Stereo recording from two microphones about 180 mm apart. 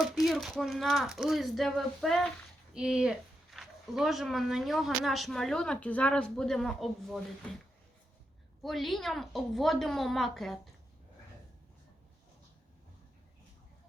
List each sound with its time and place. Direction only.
0.0 s speech: centre (ahead or behind)
8.6 s speech: centre (ahead or behind)